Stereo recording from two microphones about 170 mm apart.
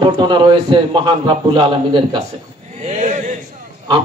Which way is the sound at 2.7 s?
45° right (ahead or behind).